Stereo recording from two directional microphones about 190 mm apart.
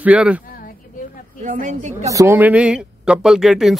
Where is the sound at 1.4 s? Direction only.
40° right (ahead or behind).